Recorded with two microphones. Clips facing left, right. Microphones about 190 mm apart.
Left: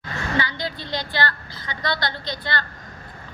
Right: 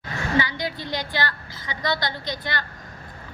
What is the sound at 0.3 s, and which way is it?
A woman's voice, 15° right (ahead or behind).